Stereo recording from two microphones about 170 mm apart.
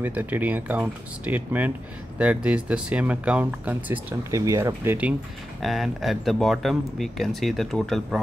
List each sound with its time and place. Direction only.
0.0 s speech: 10° right (ahead or behind)
5.6 s speech: centre (ahead or behind)